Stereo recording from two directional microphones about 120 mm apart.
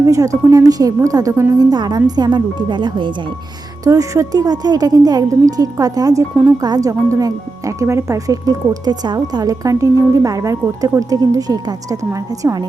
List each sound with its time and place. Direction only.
0.0 s a woman's voice: 25° right (ahead or behind)
3.8 s a woman's voice: 25° right (ahead or behind)